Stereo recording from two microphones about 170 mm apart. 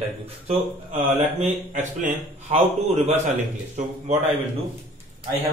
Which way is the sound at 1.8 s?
45° right (ahead or behind).